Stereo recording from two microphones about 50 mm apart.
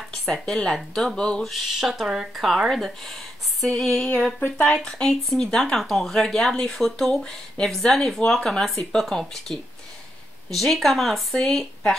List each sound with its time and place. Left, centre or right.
0.1 s speech: centre
1.1 s speech: centre
1.4 s speech: centre
4.4 s speech: left
4.8 s speech: centre
8.5 s speech: centre